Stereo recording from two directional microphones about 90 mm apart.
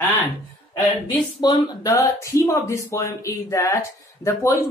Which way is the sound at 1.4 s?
45° left (ahead or behind).